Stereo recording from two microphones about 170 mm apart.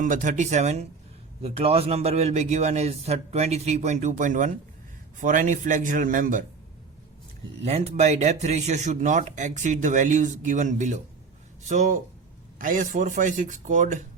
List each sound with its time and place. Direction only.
0.0 s a man's voice: 50° right (ahead or behind)
7.6 s speech: 40° right (ahead or behind)